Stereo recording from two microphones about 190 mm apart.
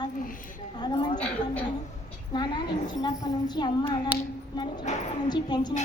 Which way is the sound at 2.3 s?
20° left (ahead or behind).